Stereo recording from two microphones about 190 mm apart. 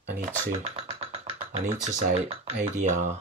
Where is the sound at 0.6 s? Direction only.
30° right (ahead or behind).